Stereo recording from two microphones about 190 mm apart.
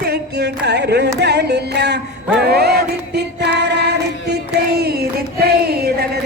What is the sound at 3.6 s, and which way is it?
Female singing, 60° right (ahead or behind).